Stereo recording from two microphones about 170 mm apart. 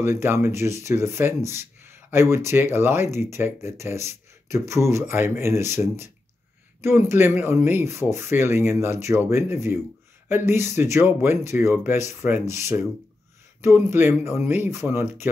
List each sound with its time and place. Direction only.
0.0 s speech: 15° right (ahead or behind)